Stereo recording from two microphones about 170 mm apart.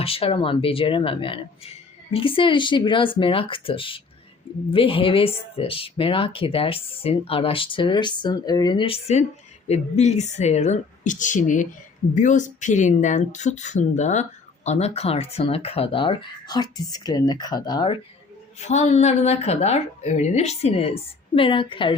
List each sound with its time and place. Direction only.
0.0 s a woman's voice: 35° left (ahead or behind)
18.6 s speech: 40° left (ahead or behind)